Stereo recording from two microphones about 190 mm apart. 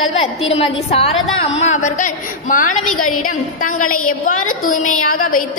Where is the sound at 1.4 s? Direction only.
35° left (ahead or behind).